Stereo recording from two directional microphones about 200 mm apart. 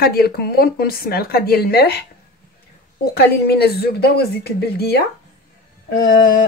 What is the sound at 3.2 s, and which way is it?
Speech, 55° left (ahead or behind).